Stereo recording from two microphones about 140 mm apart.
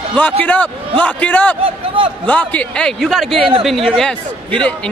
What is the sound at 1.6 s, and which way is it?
Speech, 40° right (ahead or behind).